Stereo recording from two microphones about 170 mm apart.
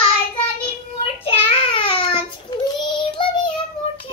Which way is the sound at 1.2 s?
35° left (ahead or behind).